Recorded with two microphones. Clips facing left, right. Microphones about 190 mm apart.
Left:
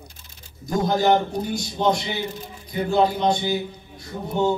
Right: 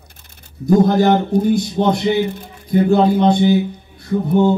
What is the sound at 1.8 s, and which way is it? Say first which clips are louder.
A man's voice: right 3 dB; 55° right (ahead or behind).